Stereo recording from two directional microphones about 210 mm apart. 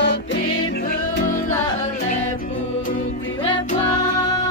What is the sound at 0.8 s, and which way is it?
Music, 40° left (ahead or behind).